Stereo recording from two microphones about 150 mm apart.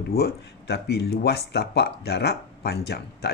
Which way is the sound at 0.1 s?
90° left.